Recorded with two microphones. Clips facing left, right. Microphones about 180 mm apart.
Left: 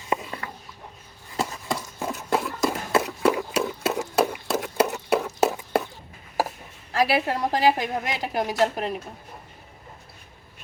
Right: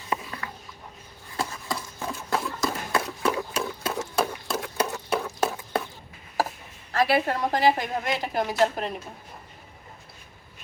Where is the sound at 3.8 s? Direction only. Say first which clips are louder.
Left 4 dB; 10° left (ahead or behind).